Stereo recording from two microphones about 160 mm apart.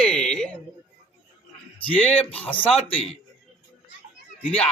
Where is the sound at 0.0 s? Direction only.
5° left (ahead or behind).